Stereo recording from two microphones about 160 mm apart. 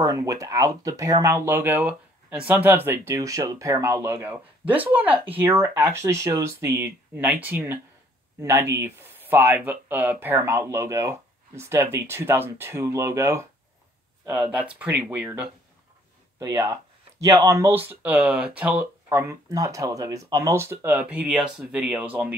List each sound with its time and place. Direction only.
0.0 s speech: 20° right (ahead or behind)
16.3 s speech: 20° right (ahead or behind)